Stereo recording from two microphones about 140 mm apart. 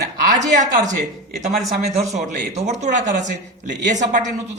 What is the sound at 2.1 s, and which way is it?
A woman's voice, 60° right (ahead or behind).